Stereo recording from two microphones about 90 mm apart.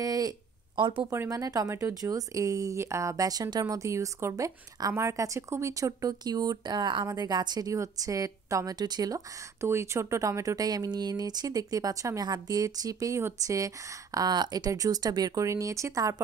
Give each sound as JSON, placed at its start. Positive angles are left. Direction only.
{"t": 0.0, "sound": "speech", "side_deg": -45}
{"t": 0.7, "sound": "speech", "side_deg": -70}
{"t": 1.3, "sound": "a woman's voice", "side_deg": -45}
{"t": 9.7, "sound": "speech", "side_deg": -30}